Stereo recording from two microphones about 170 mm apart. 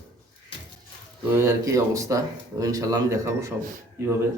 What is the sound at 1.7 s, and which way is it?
A man's voice, 20° right (ahead or behind).